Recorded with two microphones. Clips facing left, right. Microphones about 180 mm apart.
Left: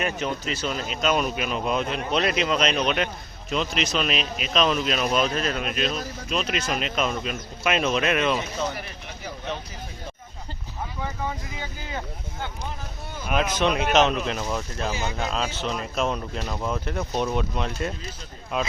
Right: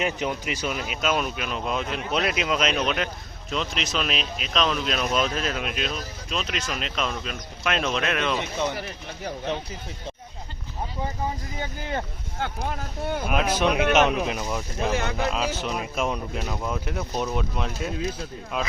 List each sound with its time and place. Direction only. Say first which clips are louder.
0.0 s speech: right 1 dB; 15° right (ahead or behind); by 8.4 s 5° left (ahead or behind)
11.6 s speech: right 6 dB; 55° right (ahead or behind)
13.2 s speech: left 1 dB; 5° right (ahead or behind)
15.2 s speech: right 2 dB; 5° right (ahead or behind)